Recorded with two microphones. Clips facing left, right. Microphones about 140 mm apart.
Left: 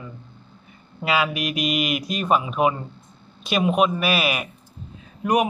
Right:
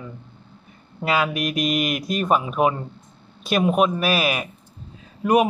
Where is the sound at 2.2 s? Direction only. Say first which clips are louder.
Even; centre (ahead or behind).